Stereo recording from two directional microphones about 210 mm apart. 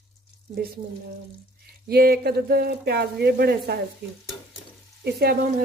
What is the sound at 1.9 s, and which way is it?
Speech, 45° right (ahead or behind).